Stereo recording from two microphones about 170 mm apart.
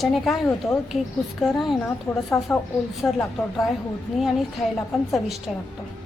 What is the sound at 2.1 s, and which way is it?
A woman's voice, 15° left (ahead or behind).